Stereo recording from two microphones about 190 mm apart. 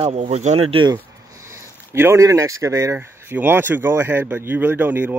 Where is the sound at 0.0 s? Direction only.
35° right (ahead or behind).